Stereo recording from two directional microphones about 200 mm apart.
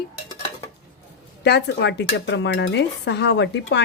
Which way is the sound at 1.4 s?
55° left (ahead or behind).